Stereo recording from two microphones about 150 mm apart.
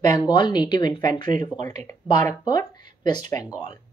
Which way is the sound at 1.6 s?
15° left (ahead or behind).